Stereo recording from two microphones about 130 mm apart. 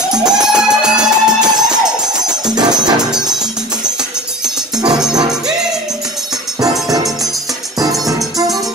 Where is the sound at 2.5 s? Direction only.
30° right (ahead or behind).